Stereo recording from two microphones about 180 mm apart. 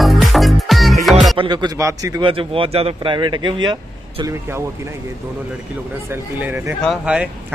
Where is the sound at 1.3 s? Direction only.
25° right (ahead or behind).